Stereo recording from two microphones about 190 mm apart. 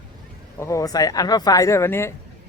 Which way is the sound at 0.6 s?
15° left (ahead or behind).